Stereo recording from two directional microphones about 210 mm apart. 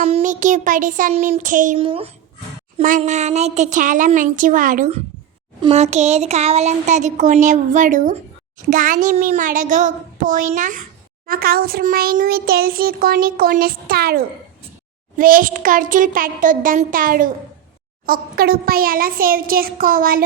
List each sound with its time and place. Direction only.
0.0 s speech: 35° right (ahead or behind)
1.8 s a child's voice: 25° right (ahead or behind)
2.7 s speech: 40° right (ahead or behind)
11.3 s a sound: 45° right (ahead or behind)
15.2 s speech: 40° right (ahead or behind)
18.0 s a sound: 45° right (ahead or behind)